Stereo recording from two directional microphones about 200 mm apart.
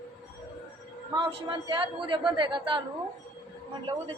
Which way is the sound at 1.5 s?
25° right (ahead or behind).